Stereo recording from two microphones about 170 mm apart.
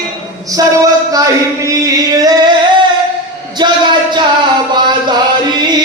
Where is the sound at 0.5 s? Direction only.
20° right (ahead or behind).